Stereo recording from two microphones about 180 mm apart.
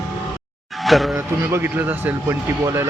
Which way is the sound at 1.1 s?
15° right (ahead or behind).